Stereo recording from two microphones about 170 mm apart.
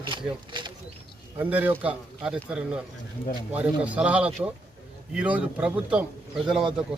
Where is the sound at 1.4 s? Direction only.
10° right (ahead or behind).